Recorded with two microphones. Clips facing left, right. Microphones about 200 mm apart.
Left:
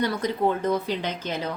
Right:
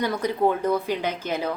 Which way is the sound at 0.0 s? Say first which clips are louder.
Right 1 dB; 10° right (ahead or behind).